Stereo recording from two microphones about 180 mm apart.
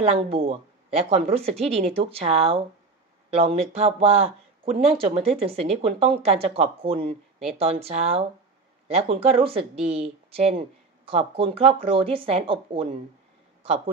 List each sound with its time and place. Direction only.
0.0 s speech: 30° right (ahead or behind)